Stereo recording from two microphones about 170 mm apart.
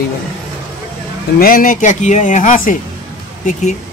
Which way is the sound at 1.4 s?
55° left (ahead or behind).